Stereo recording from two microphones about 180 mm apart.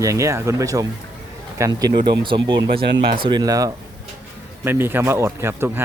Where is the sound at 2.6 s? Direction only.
60° right (ahead or behind).